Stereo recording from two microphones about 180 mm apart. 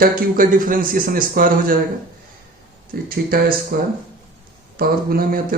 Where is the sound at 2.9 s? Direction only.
55° right (ahead or behind).